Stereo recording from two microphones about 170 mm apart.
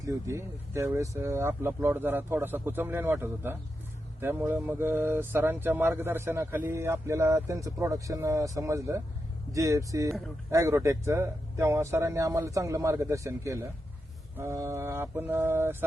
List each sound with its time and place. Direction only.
0.0 s speech: 15° right (ahead or behind)